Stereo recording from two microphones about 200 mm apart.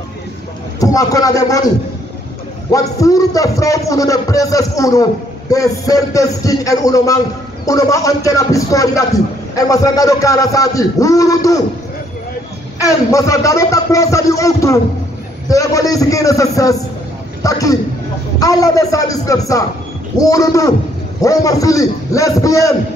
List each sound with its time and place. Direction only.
0.7 s a man's voice: 15° left (ahead or behind)
2.7 s a man's voice: 15° left (ahead or behind)
12.7 s a man's voice: 15° left (ahead or behind)